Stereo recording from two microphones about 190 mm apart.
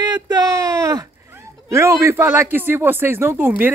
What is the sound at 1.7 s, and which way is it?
A man's voice, 15° right (ahead or behind).